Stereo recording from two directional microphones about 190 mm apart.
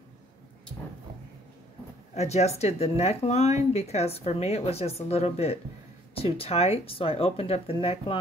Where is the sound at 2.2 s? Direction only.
35° left (ahead or behind).